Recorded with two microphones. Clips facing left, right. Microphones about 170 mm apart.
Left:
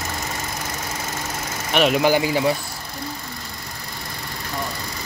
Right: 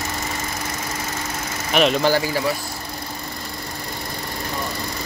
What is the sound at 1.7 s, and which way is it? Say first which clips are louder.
Speech: even; 5° left (ahead or behind).